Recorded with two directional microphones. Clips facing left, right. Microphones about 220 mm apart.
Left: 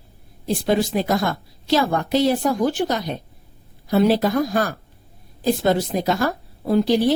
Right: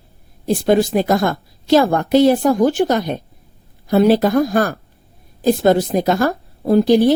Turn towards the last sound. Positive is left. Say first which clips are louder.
# right 5 dB
turn(degrees=-50)  # may be behind; listen again after turning